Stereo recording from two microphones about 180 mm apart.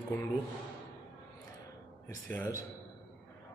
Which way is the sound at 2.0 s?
10° left (ahead or behind).